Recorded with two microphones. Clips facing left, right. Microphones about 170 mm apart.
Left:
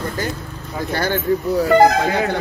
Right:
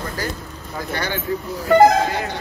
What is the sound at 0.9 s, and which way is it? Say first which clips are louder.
Speech: left 5 dB; 40° left (ahead or behind).